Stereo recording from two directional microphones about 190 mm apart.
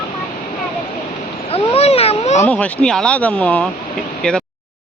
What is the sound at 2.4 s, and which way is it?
Speech, 5° left (ahead or behind).